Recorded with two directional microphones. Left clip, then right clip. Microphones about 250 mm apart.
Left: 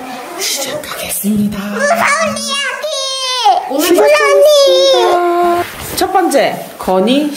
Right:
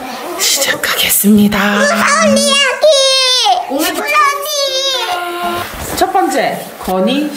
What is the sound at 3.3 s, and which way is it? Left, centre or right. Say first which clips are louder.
Baby cry: even; centre.